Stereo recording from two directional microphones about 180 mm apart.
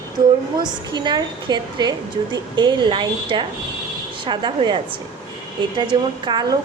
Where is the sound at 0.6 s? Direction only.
25° right (ahead or behind).